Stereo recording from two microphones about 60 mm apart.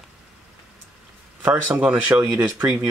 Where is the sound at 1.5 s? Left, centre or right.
Right.